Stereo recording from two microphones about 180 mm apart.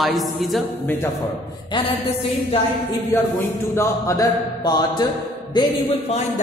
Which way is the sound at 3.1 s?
15° left (ahead or behind).